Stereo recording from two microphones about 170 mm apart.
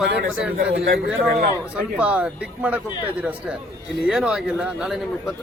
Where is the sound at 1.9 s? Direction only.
10° right (ahead or behind).